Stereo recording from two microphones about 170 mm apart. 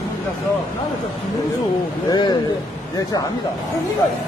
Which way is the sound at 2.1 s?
25° left (ahead or behind).